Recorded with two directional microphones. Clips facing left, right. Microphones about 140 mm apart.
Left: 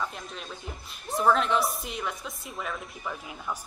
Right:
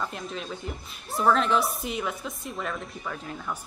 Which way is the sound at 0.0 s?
Centre (ahead or behind).